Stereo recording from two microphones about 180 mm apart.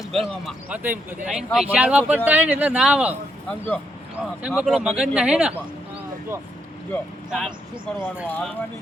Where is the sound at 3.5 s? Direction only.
5° left (ahead or behind); by 6.4 s 10° right (ahead or behind).